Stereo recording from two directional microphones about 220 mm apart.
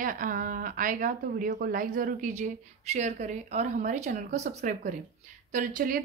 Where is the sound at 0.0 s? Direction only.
40° right (ahead or behind).